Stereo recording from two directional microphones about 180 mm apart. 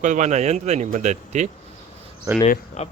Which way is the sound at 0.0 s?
45° right (ahead or behind).